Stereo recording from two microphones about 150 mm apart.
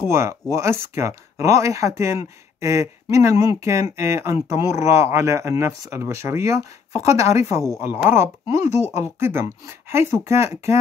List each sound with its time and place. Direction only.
0.0 s speech: 15° right (ahead or behind)